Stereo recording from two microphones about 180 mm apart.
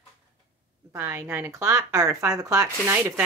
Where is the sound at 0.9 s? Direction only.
15° right (ahead or behind).